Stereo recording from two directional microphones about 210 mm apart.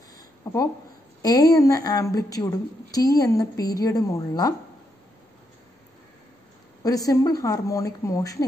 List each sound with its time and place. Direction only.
0.5 s a sound: 15° left (ahead or behind)
1.2 s a woman's voice: 20° left (ahead or behind)
6.8 s a woman's voice: 15° left (ahead or behind)